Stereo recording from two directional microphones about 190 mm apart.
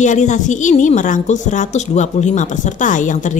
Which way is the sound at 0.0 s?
40° left (ahead or behind).